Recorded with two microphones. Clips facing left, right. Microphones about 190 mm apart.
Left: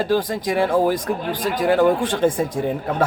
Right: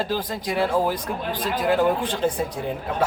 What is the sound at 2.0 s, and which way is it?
Speech, 45° left (ahead or behind).